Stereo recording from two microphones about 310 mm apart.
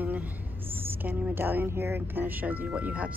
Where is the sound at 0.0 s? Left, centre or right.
Centre.